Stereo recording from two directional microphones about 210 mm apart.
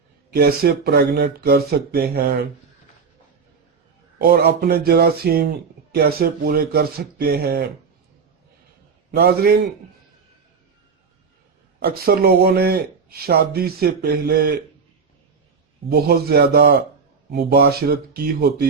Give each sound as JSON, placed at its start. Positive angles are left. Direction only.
{"t": 0.3, "sound": "speech", "side_deg": -45}
{"t": 4.2, "sound": "speech", "side_deg": -45}
{"t": 9.1, "sound": "speech", "side_deg": -45}
{"t": 11.8, "sound": "speech", "side_deg": -45}
{"t": 15.9, "sound": "speech", "side_deg": -50}